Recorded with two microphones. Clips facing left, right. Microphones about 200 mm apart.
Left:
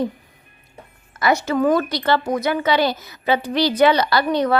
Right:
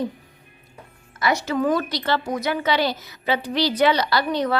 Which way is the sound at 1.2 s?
55° left (ahead or behind).